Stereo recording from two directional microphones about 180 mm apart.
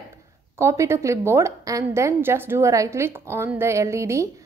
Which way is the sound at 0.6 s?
15° right (ahead or behind).